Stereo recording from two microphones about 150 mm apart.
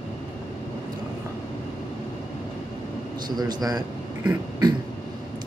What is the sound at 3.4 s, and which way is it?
Speech, 25° right (ahead or behind).